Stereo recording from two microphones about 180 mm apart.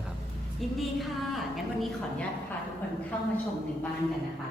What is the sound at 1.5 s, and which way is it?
Speech, centre (ahead or behind).